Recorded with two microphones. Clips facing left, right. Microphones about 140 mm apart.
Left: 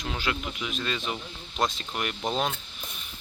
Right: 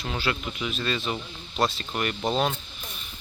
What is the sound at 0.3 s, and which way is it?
Speech, 5° left (ahead or behind).